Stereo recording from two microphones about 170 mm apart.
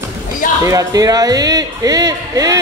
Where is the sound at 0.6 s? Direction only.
20° right (ahead or behind).